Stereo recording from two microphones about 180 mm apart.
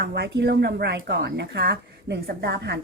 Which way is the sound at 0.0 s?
65° right (ahead or behind).